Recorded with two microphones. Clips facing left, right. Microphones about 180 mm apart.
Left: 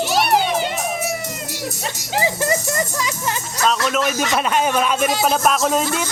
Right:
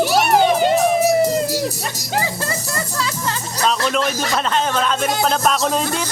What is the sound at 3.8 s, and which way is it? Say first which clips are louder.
Music: right 1 dB; 5° left (ahead or behind).